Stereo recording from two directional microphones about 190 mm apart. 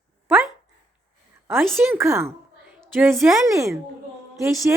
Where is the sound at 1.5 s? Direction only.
Centre (ahead or behind).